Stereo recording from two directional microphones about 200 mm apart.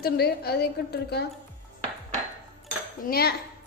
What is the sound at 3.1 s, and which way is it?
Speech, 50° left (ahead or behind).